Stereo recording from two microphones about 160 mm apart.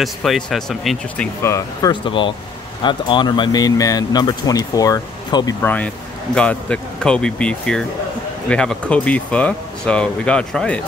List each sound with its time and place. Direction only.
0.0 s speech: centre (ahead or behind); by 5.6 s 25° left (ahead or behind)
5.6 s speech: 10° left (ahead or behind)